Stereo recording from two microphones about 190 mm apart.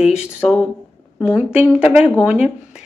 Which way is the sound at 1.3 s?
5° right (ahead or behind).